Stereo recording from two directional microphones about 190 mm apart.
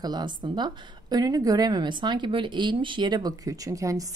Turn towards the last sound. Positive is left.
turn(degrees=-15)  # may be behind; listen again after turning